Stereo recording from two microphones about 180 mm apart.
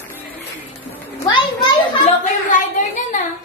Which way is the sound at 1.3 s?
25° left (ahead or behind).